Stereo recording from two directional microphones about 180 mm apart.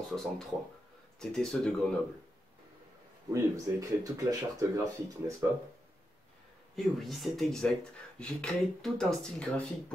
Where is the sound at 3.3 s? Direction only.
20° right (ahead or behind).